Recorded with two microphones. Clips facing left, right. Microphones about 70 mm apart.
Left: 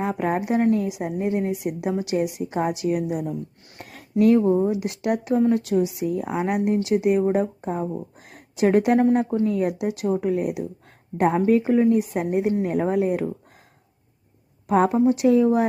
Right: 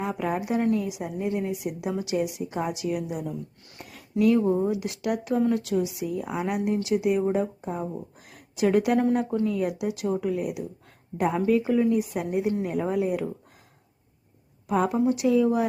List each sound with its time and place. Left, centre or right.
0.0 s a woman's voice: left
3.8 s a sound: left
4.4 s a woman's voice: left
8.2 s a sound: left
9.1 s a woman's voice: left
14.7 s a woman's voice: left